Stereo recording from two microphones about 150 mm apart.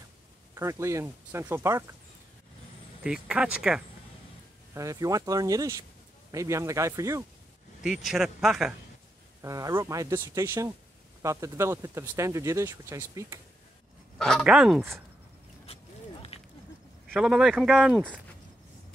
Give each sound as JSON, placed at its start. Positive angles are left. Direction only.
{"t": 0.6, "sound": "speech", "side_deg": -20}
{"t": 3.0, "sound": "speech", "side_deg": -5}
{"t": 4.7, "sound": "speech", "side_deg": -20}
{"t": 8.0, "sound": "speech", "side_deg": 0}
{"t": 9.4, "sound": "speech", "side_deg": -20}
{"t": 14.1, "sound": "speech", "side_deg": 5}
{"t": 15.6, "sound": "a sound", "side_deg": 40}
{"t": 17.1, "sound": "speech", "side_deg": -5}